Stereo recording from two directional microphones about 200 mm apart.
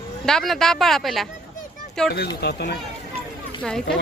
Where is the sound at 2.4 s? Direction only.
55° left (ahead or behind).